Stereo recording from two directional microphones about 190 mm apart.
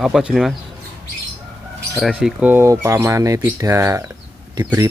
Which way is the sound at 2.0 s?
5° right (ahead or behind).